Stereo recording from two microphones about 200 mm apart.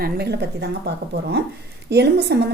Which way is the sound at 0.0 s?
55° right (ahead or behind).